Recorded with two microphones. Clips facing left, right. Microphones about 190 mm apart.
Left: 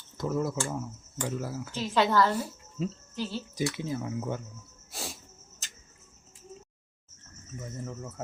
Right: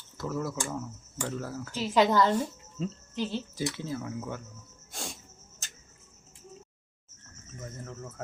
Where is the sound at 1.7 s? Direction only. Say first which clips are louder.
Right 2 dB; 15° right (ahead or behind).